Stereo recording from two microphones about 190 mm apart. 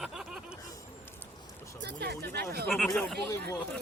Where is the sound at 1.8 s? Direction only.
60° right (ahead or behind).